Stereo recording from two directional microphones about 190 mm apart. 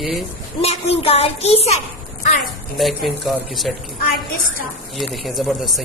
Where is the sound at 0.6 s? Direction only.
30° left (ahead or behind).